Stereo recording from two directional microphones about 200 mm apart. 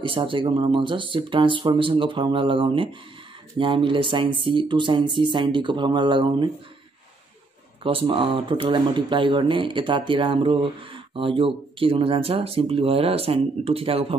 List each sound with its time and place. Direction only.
0.0 s speech: 25° right (ahead or behind)
7.8 s speech: 25° right (ahead or behind)